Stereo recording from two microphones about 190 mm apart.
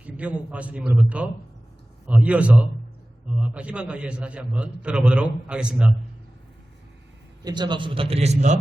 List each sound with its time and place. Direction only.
0.0 s a man's voice: 5° right (ahead or behind)
7.4 s a man's voice: 25° right (ahead or behind)